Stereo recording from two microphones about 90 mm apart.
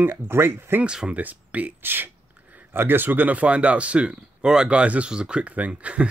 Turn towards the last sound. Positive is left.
turn(degrees=-15)  # may be behind; listen again after turning